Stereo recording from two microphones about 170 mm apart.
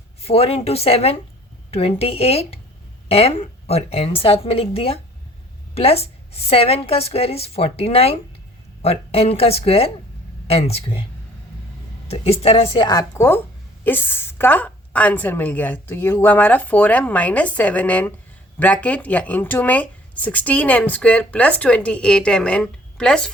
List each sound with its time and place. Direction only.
0.2 s a woman's voice: 35° left (ahead or behind)
12.0 s a woman's voice: 35° left (ahead or behind); by 23.3 s 5° left (ahead or behind)